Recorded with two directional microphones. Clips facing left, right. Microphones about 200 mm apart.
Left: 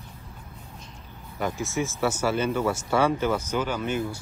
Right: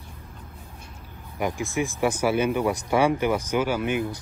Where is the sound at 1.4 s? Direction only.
15° right (ahead or behind).